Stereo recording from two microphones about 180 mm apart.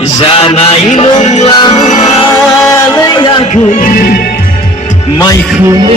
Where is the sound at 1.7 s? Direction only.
40° left (ahead or behind).